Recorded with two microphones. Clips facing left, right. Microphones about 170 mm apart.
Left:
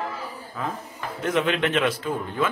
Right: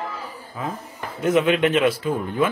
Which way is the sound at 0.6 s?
10° right (ahead or behind).